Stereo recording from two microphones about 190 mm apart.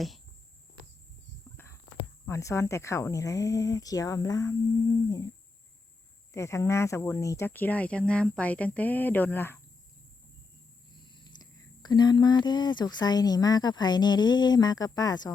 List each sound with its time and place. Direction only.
1.5 s a sound: 15° left (ahead or behind)
2.2 s speech: 15° left (ahead or behind)
6.3 s speech: 15° left (ahead or behind)
11.1 s speech: 20° left (ahead or behind)